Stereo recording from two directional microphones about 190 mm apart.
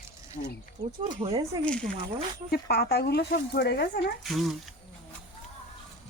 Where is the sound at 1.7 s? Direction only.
5° left (ahead or behind).